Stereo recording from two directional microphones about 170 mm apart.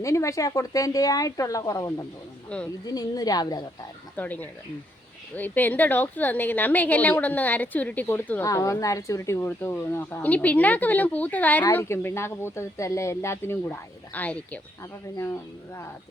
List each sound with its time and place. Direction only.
0.0 s speech: 20° left (ahead or behind)
4.2 s a woman's voice: 10° left (ahead or behind)